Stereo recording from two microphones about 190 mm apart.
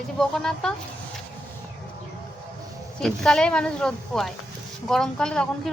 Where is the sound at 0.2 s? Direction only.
5° left (ahead or behind).